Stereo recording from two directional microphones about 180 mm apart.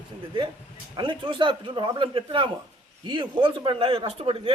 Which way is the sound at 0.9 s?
25° right (ahead or behind).